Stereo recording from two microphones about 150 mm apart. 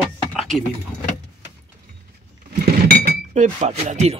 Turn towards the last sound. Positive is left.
turn(degrees=-50)  # may be behind; listen again after turning